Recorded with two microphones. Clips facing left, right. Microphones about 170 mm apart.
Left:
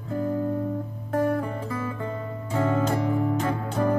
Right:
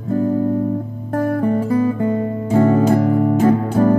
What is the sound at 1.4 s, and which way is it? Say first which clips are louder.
Music: right 14 dB; 40° right (ahead or behind).